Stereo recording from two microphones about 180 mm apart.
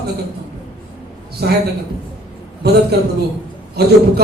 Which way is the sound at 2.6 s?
60° right (ahead or behind).